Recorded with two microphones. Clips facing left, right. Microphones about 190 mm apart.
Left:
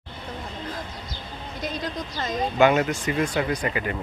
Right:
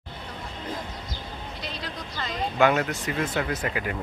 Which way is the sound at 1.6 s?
45° left (ahead or behind).